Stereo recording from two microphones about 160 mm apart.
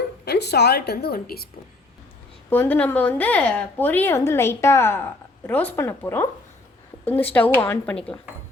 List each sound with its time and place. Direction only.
0.3 s a woman's voice: 90° left; by 1.5 s 70° left (ahead or behind)
2.5 s a woman's voice: 10° left (ahead or behind)